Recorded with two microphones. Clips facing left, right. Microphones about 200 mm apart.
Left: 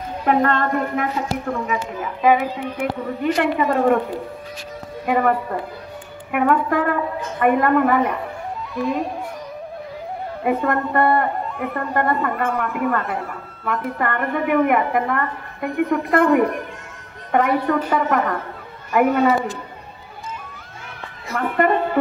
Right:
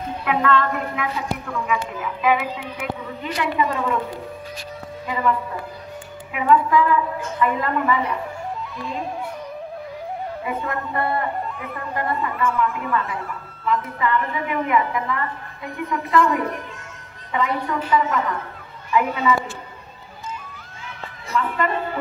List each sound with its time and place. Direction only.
0.2 s a woman's voice: 45° left (ahead or behind)
1.5 s a woman's voice: 35° left (ahead or behind)
5.0 s speech: 60° left (ahead or behind)
10.4 s a woman's voice: 55° left (ahead or behind)
21.3 s speech: 60° left (ahead or behind)